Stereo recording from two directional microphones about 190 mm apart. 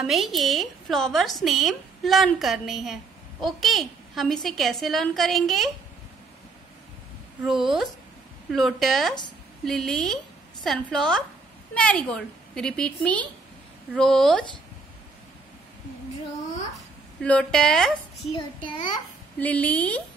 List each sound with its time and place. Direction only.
0.0 s speech: centre (ahead or behind)
7.4 s speech: centre (ahead or behind)
17.2 s speech: 5° left (ahead or behind)
18.3 s a child's voice: 25° left (ahead or behind)
19.4 s a woman's voice: 10° left (ahead or behind)